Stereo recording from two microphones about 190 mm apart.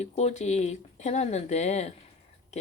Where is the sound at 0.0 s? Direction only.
35° left (ahead or behind).